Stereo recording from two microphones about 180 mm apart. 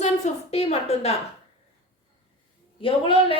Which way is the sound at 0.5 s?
35° left (ahead or behind).